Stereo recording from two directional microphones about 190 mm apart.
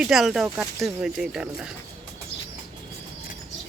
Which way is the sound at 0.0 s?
Centre (ahead or behind).